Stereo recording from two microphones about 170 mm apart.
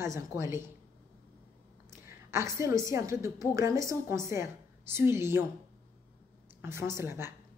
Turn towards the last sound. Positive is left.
turn(degrees=-15)  # may be behind; listen again after turning